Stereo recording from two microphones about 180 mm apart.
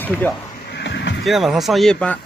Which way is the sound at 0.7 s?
75° left (ahead or behind).